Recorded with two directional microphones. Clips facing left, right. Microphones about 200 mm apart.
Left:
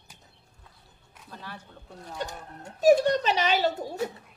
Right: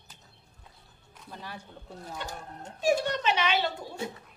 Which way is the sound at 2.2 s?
40° left (ahead or behind).